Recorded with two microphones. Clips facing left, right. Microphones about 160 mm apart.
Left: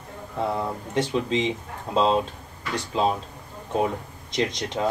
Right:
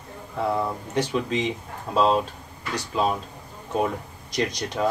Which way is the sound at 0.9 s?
25° left (ahead or behind).